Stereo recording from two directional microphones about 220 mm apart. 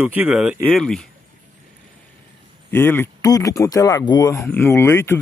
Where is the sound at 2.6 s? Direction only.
10° left (ahead or behind).